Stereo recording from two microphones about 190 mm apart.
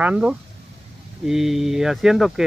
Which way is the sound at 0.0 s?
5° right (ahead or behind).